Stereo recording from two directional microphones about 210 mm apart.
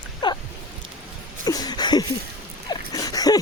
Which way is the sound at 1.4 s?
20° left (ahead or behind).